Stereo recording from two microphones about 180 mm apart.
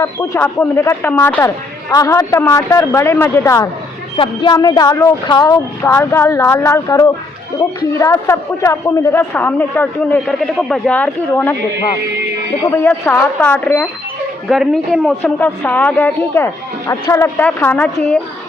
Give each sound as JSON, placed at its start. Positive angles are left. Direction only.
{"t": 0.0, "sound": "a man's voice", "side_deg": 10}
{"t": 12.6, "sound": "a man's voice", "side_deg": 10}
{"t": 14.5, "sound": "a woman's voice", "side_deg": 0}
{"t": 15.2, "sound": "a man's voice", "side_deg": 10}